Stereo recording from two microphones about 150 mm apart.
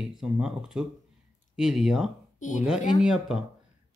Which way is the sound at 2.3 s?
55° left (ahead or behind).